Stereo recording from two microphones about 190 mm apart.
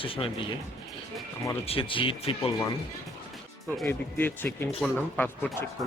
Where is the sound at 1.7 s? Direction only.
30° left (ahead or behind).